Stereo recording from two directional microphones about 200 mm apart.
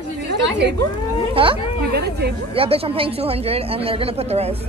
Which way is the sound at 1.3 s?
25° right (ahead or behind).